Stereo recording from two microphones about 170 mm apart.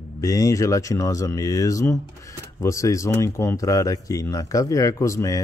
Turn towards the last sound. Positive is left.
turn(degrees=20)  # may be behind; listen again after turning